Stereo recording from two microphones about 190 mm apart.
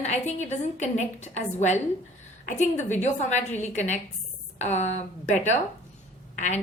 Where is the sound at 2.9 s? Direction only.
40° left (ahead or behind).